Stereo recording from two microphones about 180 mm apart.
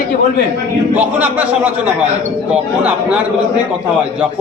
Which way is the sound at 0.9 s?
10° right (ahead or behind).